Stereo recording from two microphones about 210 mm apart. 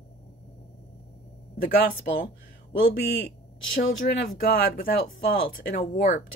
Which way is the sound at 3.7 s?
45° left (ahead or behind).